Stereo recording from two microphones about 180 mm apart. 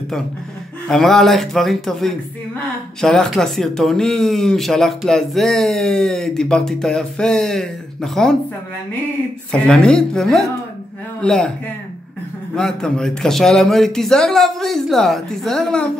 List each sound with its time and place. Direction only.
0.8 s speech: centre (ahead or behind)
9.5 s speech: 5° left (ahead or behind)
12.5 s speech: 5° left (ahead or behind)